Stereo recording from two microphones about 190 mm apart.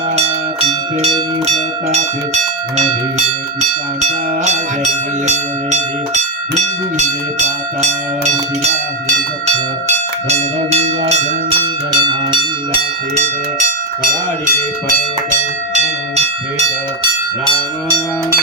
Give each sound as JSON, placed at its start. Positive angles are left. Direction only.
{"t": 0.2, "sound": "bell", "side_deg": -35}
{"t": 2.7, "sound": "speech", "side_deg": -35}
{"t": 7.3, "sound": "speech", "side_deg": -35}
{"t": 9.8, "sound": "speech", "side_deg": -35}
{"t": 11.9, "sound": "a sound", "side_deg": -25}